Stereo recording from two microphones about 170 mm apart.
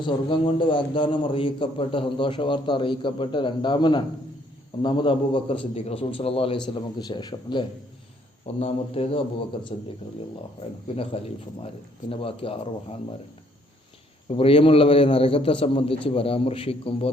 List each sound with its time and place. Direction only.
0.0 s a man's voice: 30° left (ahead or behind)
10.8 s a man's voice: 35° left (ahead or behind)
14.3 s a man's voice: 35° left (ahead or behind)